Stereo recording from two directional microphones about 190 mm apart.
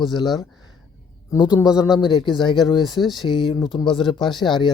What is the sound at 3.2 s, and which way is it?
Speech, 25° left (ahead or behind).